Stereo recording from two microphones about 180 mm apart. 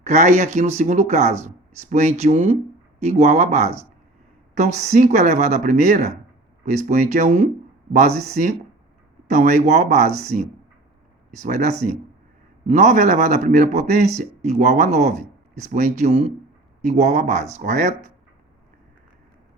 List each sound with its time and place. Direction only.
0.0 s a man's voice: 40° right (ahead or behind)
11.4 s a man's voice: 45° right (ahead or behind)